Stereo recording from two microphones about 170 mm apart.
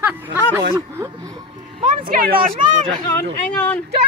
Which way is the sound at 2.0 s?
60° right (ahead or behind).